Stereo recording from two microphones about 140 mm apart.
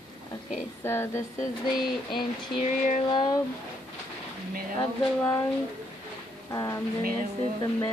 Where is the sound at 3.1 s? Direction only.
35° left (ahead or behind).